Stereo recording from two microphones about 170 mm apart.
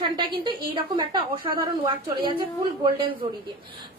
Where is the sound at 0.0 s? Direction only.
25° right (ahead or behind).